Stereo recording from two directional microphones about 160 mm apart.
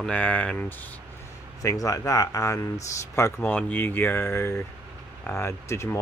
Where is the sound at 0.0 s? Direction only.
10° left (ahead or behind).